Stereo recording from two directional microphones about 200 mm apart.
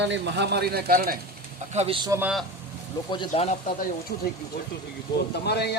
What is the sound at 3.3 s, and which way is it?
Speech, 35° left (ahead or behind).